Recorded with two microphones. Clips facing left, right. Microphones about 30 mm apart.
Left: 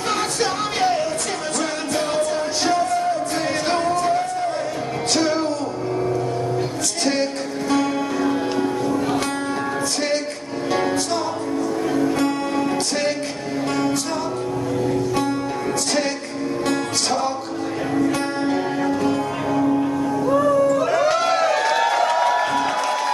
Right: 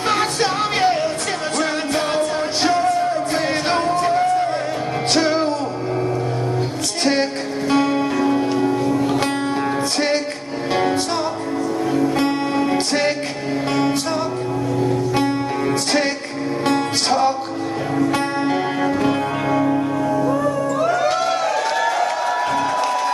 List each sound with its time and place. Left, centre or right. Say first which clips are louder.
0.1 s music: right 3 dB; right
7.7 s music: right 3 dB; right
12.2 s music: right 2 dB; right
16.6 s music: right 4 dB; right